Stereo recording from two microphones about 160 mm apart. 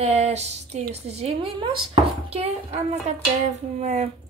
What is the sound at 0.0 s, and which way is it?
Speech, 40° right (ahead or behind).